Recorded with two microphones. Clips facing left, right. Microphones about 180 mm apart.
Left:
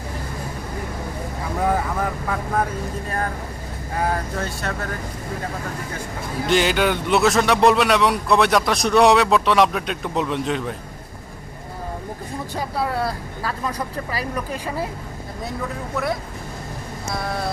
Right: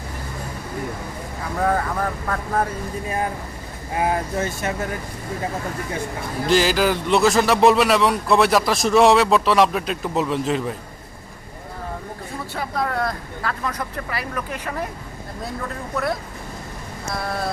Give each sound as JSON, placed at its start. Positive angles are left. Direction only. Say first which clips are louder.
{"t": 1.6, "sound": "a man's voice", "louder": "even", "side_deg": 5}
{"t": 3.1, "sound": "speech", "louder": "right 3 dB", "side_deg": -15}
{"t": 6.5, "sound": "a man's voice", "louder": "right 1 dB", "side_deg": 0}
{"t": 12.5, "sound": "speech", "louder": "even", "side_deg": 10}
{"t": 15.4, "sound": "a man's voice", "louder": "left 1 dB", "side_deg": 0}